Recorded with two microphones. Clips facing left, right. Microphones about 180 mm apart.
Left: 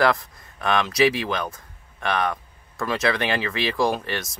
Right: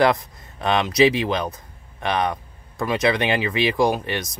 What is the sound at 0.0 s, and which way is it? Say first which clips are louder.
Speech: right 2 dB; 20° right (ahead or behind).